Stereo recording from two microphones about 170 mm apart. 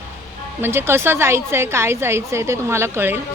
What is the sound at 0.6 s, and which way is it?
A woman's voice, 15° right (ahead or behind).